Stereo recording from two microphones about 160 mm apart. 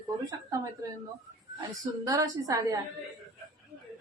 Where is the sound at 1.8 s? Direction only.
20° right (ahead or behind).